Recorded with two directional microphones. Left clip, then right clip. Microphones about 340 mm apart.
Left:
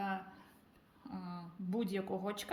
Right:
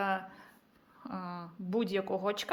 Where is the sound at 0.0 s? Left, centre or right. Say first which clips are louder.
Right 7 dB; centre.